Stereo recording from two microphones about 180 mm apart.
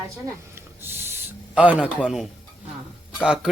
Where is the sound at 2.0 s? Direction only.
5° right (ahead or behind).